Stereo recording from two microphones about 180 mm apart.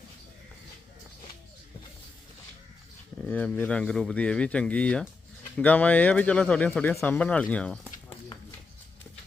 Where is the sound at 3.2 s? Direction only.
10° left (ahead or behind).